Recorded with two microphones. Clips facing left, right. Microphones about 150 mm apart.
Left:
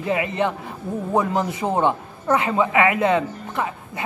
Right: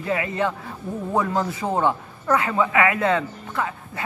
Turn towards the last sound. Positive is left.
turn(degrees=20)  # may be behind; listen again after turning